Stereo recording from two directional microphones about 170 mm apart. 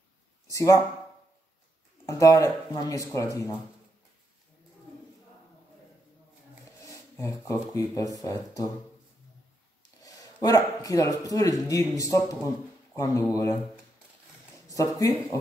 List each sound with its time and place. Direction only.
0.5 s speech: 20° left (ahead or behind)
2.0 s speech: 20° left (ahead or behind)
6.8 s speech: 20° left (ahead or behind)
10.0 s speech: 20° left (ahead or behind)
15.0 s speech: 20° left (ahead or behind)